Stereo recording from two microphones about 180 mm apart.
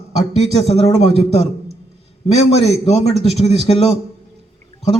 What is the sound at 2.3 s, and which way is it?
A man's voice, 35° left (ahead or behind).